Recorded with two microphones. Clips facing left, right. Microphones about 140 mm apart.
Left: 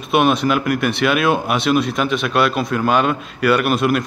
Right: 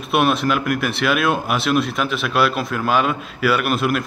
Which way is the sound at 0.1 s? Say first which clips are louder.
Left 2 dB; centre (ahead or behind).